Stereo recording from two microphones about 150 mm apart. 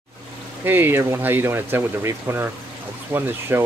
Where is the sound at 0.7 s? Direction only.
15° right (ahead or behind).